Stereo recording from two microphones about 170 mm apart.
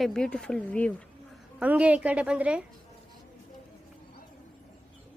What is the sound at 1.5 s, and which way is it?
A woman's voice, 10° right (ahead or behind).